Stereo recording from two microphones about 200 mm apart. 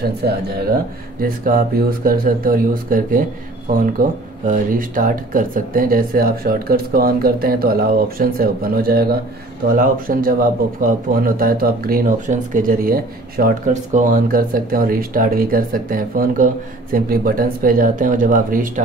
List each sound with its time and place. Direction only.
0.0 s speech: 50° right (ahead or behind)